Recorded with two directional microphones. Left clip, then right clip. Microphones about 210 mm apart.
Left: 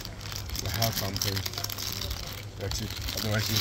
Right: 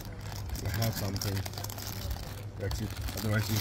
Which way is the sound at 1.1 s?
45° right (ahead or behind).